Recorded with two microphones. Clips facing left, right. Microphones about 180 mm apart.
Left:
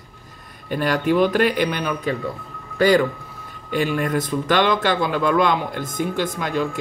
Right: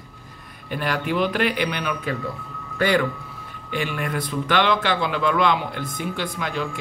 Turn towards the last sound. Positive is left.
turn(degrees=45)  # may be behind; listen again after turning